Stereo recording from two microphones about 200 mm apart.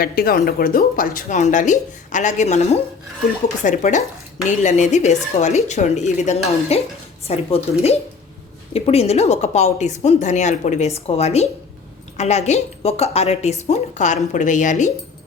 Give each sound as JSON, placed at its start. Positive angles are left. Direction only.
{"t": 0.0, "sound": "a woman's voice", "side_deg": 45}